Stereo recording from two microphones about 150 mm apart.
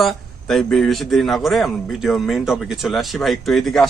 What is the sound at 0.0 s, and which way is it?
A man's voice, centre (ahead or behind).